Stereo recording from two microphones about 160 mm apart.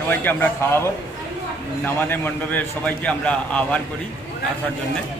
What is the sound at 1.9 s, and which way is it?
A man's voice, 15° left (ahead or behind).